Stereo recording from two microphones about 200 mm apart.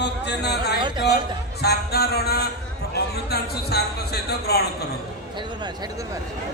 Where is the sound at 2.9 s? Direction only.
55° left (ahead or behind).